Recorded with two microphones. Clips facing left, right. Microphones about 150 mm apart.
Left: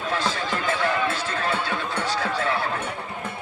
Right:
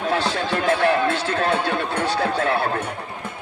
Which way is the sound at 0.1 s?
65° right (ahead or behind).